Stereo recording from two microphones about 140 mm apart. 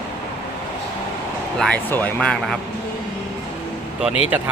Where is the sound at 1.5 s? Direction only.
5° left (ahead or behind).